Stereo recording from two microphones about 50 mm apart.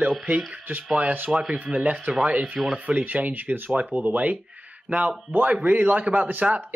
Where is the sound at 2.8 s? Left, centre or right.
Right.